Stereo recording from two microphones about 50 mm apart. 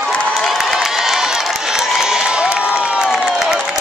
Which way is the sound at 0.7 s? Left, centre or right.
Centre.